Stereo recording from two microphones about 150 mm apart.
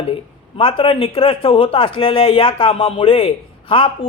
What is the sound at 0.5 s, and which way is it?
A man's voice, 40° left (ahead or behind).